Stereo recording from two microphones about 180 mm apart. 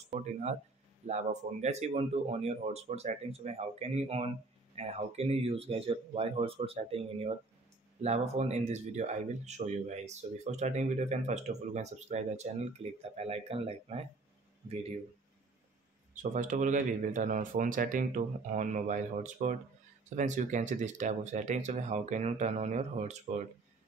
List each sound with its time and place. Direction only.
0.1 s speech: 40° right (ahead or behind)
16.2 s speech: 45° right (ahead or behind)